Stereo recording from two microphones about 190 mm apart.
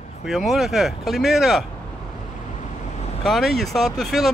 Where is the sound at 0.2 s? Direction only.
Centre (ahead or behind).